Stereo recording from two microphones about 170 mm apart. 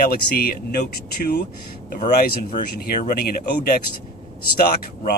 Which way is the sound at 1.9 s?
55° left (ahead or behind).